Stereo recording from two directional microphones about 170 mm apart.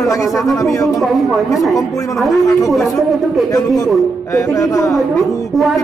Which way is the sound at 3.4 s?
20° left (ahead or behind).